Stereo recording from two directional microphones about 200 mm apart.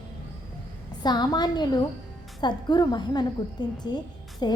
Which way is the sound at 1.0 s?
20° left (ahead or behind).